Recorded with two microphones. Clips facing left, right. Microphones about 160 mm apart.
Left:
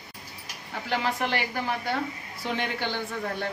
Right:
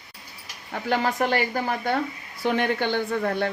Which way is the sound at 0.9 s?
45° right (ahead or behind).